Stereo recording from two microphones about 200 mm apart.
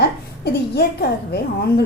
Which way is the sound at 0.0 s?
50° left (ahead or behind).